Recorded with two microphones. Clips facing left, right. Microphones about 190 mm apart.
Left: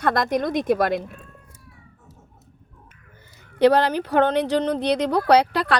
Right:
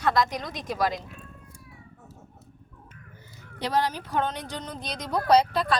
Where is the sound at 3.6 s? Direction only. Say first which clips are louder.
Left 10 dB; 65° left (ahead or behind).